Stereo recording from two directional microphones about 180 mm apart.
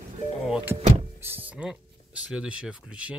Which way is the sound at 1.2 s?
10° right (ahead or behind).